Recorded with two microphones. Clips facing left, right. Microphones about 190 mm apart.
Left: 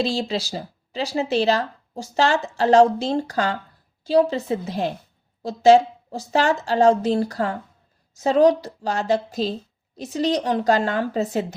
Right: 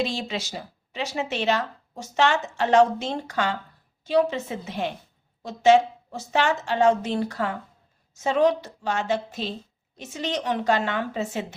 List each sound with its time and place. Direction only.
0.0 s speech: 35° left (ahead or behind)